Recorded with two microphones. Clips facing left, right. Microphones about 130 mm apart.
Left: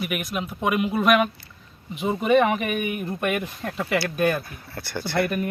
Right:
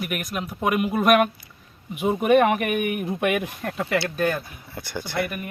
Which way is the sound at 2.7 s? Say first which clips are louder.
Right 2 dB; 65° right (ahead or behind).